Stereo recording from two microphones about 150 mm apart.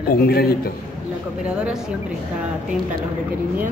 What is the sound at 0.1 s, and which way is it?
Speech, 90° left.